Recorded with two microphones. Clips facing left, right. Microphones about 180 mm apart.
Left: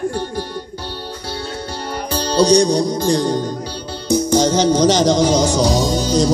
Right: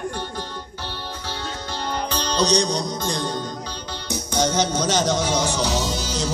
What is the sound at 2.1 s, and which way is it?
Music, 10° left (ahead or behind).